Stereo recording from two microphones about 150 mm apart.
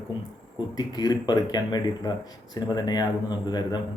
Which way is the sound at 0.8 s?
25° left (ahead or behind).